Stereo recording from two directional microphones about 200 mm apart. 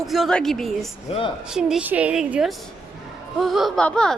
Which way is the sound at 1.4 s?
5° right (ahead or behind).